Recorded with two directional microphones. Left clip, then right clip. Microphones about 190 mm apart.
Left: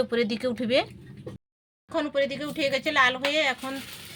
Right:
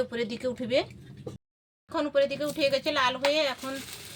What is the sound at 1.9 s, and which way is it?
A woman's voice, 25° left (ahead or behind).